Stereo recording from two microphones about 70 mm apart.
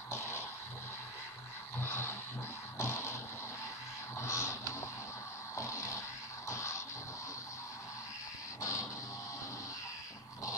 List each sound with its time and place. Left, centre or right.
1.8 s a sound: left
2.8 s vehicle: left
4.2 s printer: left
5.6 s a sound: left
6.5 s music: left
8.5 s dog: left